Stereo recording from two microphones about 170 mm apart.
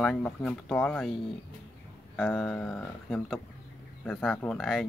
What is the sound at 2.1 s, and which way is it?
Speech, 5° left (ahead or behind).